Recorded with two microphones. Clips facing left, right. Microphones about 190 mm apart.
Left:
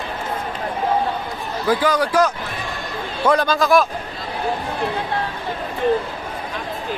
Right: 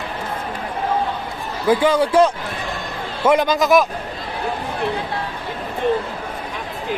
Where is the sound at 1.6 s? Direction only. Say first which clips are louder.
Right 3 dB; 25° right (ahead or behind).